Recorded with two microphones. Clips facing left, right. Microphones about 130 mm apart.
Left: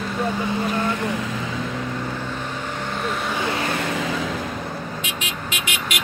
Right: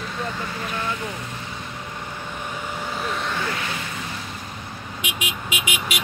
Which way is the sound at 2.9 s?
Centre (ahead or behind).